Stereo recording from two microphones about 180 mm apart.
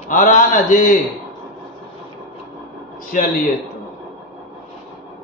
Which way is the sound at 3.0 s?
50° left (ahead or behind).